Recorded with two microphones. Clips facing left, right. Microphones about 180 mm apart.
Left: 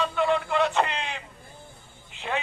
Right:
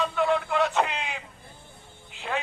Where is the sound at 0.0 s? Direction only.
Centre (ahead or behind).